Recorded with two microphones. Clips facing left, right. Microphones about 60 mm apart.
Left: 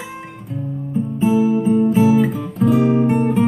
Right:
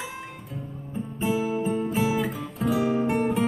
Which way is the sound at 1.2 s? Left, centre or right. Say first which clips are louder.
Left 9 dB; centre.